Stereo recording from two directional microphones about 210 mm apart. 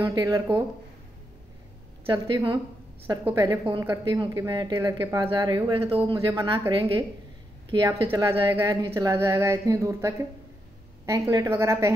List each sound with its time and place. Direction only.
0.0 s speech: 15° right (ahead or behind)
2.0 s a woman's voice: 20° right (ahead or behind)
6.1 s a woman's voice: 15° right (ahead or behind)
8.1 s speech: 10° right (ahead or behind)